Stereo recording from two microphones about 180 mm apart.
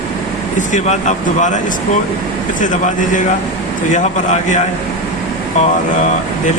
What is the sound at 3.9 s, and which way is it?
Speech, 40° left (ahead or behind).